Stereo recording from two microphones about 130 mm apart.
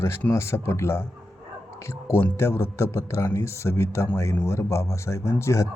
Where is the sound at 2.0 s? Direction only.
20° left (ahead or behind).